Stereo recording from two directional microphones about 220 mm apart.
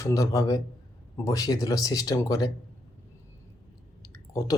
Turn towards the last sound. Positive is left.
turn(degrees=15)  # may be behind; listen again after turning